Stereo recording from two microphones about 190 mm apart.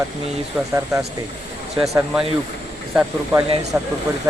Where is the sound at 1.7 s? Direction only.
Centre (ahead or behind).